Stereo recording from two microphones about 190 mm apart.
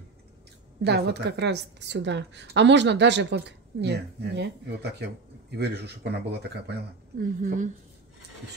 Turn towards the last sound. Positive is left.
turn(degrees=-45)  # may be behind; listen again after turning